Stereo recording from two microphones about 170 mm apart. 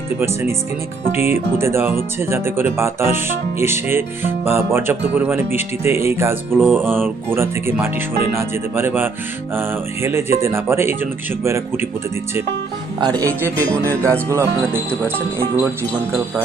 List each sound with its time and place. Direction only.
0.2 s speech: 15° right (ahead or behind)
13.0 s speech: 20° right (ahead or behind)